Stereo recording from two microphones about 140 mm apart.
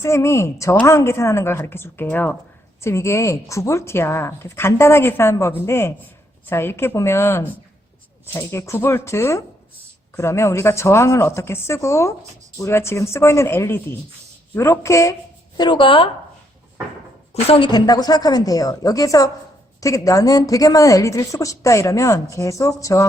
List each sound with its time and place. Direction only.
0.0 s a woman's voice: 20° left (ahead or behind)
15.5 s speech: 35° left (ahead or behind)
17.5 s a woman's voice: 35° left (ahead or behind)